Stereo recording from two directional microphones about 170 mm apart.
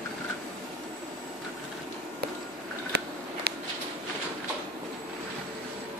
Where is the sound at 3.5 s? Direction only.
70° right (ahead or behind).